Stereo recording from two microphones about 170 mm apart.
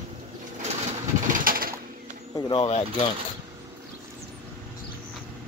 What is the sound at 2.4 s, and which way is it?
Speech, 35° left (ahead or behind).